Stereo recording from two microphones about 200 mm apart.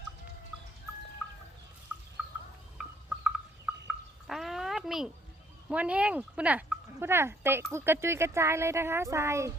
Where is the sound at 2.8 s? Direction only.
5° right (ahead or behind).